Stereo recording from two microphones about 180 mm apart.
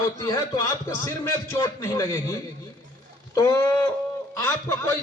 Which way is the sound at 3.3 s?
20° left (ahead or behind).